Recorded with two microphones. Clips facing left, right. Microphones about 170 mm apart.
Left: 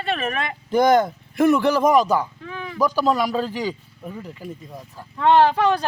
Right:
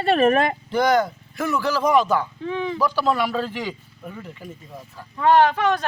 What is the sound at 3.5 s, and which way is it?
Speech, 35° left (ahead or behind).